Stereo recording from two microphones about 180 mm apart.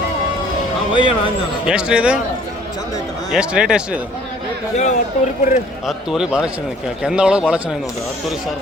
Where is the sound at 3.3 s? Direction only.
5° right (ahead or behind).